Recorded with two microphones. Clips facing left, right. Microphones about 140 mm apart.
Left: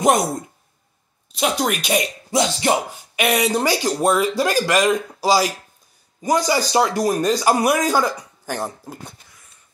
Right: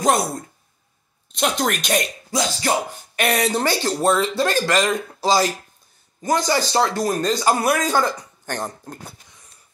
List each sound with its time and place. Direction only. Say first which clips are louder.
1.3 s a man's voice: left 1 dB; 5° left (ahead or behind)
2.3 s a sound: left 4 dB; 25° left (ahead or behind)
2.9 s a man's voice: left 1 dB; 5° left (ahead or behind)